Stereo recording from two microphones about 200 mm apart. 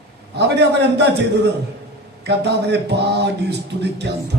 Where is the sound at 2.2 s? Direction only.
60° right (ahead or behind).